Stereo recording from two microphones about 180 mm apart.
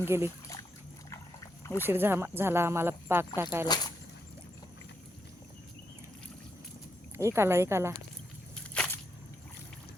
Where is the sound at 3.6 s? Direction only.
20° left (ahead or behind).